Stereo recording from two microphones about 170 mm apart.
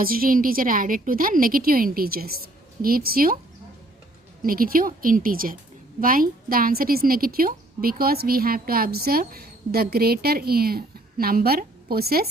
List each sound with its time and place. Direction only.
0.0 s a woman's voice: 60° right (ahead or behind)
4.4 s a woman's voice: 60° right (ahead or behind)